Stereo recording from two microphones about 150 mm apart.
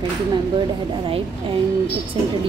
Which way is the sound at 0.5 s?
35° right (ahead or behind).